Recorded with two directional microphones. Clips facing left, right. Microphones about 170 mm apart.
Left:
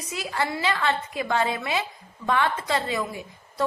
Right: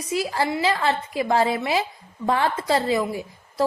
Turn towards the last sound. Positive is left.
turn(degrees=-30)  # may be behind; listen again after turning